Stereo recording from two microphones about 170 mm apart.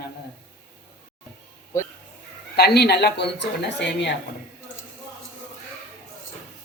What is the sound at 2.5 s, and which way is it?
Speech, 75° left (ahead or behind).